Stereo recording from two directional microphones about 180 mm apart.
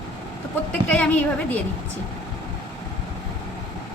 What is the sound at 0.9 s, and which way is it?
Speech, 10° left (ahead or behind).